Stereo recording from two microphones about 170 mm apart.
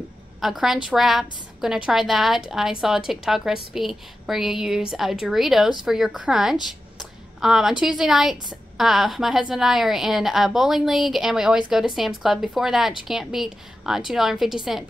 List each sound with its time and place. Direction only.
0.4 s a woman's voice: centre (ahead or behind)
7.0 s a sound: centre (ahead or behind)
7.8 s a woman's voice: centre (ahead or behind)